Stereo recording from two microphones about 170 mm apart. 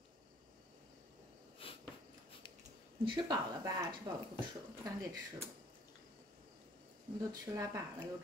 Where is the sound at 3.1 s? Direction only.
25° right (ahead or behind).